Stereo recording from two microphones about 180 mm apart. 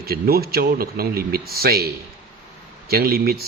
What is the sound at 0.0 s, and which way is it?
Speech, 60° right (ahead or behind).